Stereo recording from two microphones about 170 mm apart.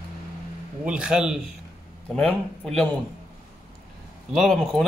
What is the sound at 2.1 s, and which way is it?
Speech, 5° left (ahead or behind).